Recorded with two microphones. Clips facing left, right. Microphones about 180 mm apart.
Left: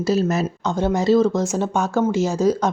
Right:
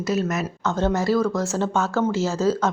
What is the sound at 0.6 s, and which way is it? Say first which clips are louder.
Speech: even; 15° left (ahead or behind).